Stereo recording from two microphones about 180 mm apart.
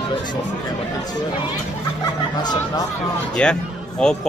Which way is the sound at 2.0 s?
20° left (ahead or behind).